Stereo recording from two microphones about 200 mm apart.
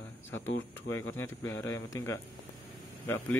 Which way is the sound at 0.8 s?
90° left.